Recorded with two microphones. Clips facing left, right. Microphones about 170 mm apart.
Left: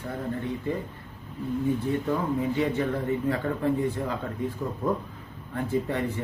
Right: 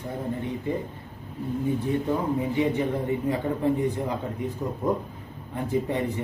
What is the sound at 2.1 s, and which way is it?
A man's voice, 20° right (ahead or behind).